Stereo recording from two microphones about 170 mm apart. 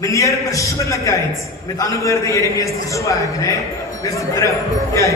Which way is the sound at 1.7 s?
20° left (ahead or behind).